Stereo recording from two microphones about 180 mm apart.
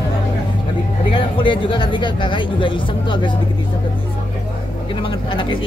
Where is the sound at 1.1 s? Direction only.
25° left (ahead or behind).